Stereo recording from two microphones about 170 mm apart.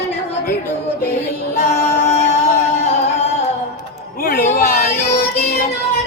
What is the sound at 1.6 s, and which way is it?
Music, 65° left (ahead or behind).